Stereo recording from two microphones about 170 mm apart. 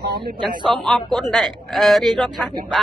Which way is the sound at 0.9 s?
Centre (ahead or behind).